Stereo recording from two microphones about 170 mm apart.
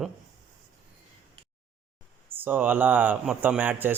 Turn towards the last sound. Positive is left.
turn(degrees=-10)  # may be behind; listen again after turning